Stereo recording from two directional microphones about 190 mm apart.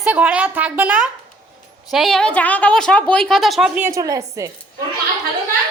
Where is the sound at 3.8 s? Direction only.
15° right (ahead or behind).